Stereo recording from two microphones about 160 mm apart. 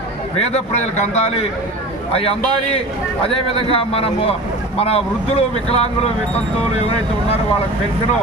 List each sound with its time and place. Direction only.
0.3 s a man's voice: 40° left (ahead or behind)
3.2 s a man's voice: 35° left (ahead or behind)